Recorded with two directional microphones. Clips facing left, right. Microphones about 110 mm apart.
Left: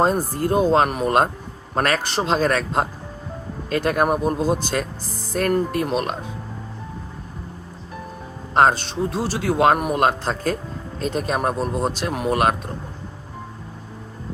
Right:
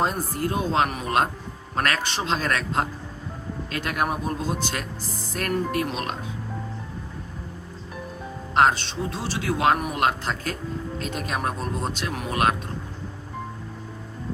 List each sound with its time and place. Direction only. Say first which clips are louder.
0.0 s speech: left 5 dB; 40° left (ahead or behind)
5.3 s speech: left 5 dB; 30° left (ahead or behind)
5.9 s speech: left 7 dB; 45° left (ahead or behind)
8.5 s speech: left 3 dB; 40° left (ahead or behind)
10.0 s speech: left 4 dB; 35° left (ahead or behind)